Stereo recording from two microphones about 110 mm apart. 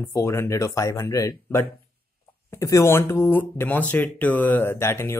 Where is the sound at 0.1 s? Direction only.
25° left (ahead or behind).